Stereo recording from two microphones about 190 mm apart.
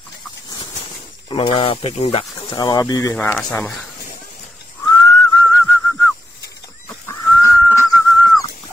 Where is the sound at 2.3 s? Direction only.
20° left (ahead or behind).